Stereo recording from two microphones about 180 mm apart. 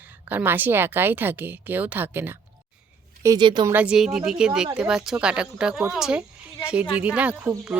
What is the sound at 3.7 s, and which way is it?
Speech, 5° right (ahead or behind).